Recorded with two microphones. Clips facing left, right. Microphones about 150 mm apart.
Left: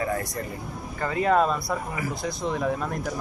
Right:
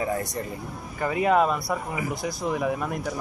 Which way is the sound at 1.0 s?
15° right (ahead or behind).